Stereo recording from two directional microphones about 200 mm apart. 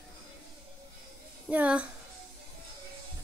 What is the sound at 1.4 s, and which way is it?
Speech, 5° right (ahead or behind).